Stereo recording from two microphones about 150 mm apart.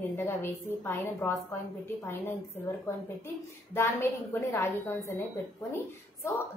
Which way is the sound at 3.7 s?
15° left (ahead or behind).